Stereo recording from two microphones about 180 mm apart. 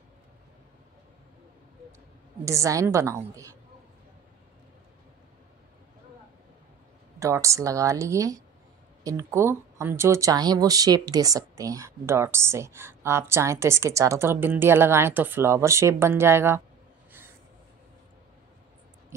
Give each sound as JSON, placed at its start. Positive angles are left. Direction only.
{"t": 2.4, "sound": "speech", "side_deg": -15}
{"t": 7.2, "sound": "speech", "side_deg": -15}